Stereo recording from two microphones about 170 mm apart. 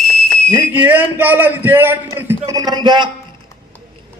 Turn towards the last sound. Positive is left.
turn(degrees=-25)  # may be behind; listen again after turning